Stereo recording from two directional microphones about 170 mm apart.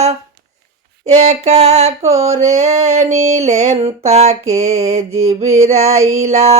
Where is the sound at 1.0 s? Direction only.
40° right (ahead or behind).